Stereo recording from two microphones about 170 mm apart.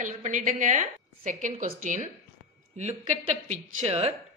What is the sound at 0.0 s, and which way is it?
A woman's voice, 45° right (ahead or behind).